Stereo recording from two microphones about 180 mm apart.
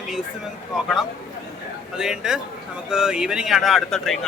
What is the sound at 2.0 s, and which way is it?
Speech, 5° right (ahead or behind).